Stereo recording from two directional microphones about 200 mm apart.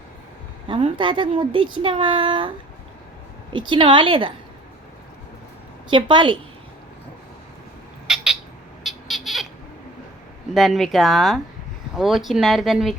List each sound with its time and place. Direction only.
0.7 s speech: 25° right (ahead or behind)
3.5 s speech: 25° right (ahead or behind)
5.9 s speech: 25° right (ahead or behind)
8.0 s bird: 5° right (ahead or behind)
8.8 s a sound: centre (ahead or behind)
10.5 s speech: centre (ahead or behind)